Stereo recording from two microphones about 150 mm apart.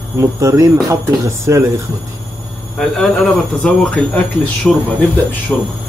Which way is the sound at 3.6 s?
5° left (ahead or behind).